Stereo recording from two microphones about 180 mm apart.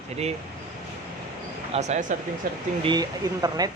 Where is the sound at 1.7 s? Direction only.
40° right (ahead or behind).